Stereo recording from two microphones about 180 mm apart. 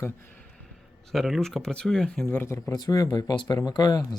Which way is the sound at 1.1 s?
Centre (ahead or behind).